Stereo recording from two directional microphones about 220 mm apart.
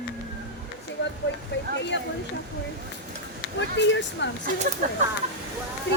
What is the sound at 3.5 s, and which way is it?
Speech, 55° left (ahead or behind).